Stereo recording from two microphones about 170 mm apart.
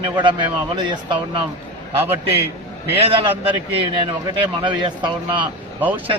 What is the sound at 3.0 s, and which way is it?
A man's voice, 30° right (ahead or behind).